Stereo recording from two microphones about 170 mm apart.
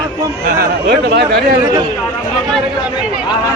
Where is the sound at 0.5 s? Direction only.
60° right (ahead or behind).